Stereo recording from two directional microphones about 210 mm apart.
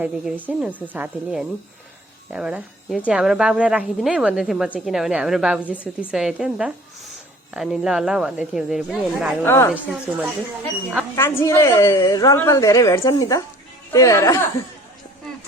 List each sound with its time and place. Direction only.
0.0 s a woman's voice: 5° right (ahead or behind)
9.4 s a woman's voice: 10° left (ahead or behind)
9.7 s speech: 5° right (ahead or behind)
11.1 s a woman's voice: 15° left (ahead or behind)